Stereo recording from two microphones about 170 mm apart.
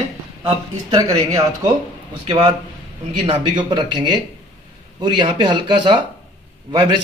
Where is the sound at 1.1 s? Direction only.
20° right (ahead or behind).